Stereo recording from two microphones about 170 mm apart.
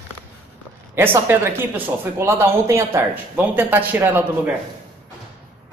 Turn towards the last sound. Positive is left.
turn(degrees=-10)  # may be behind; listen again after turning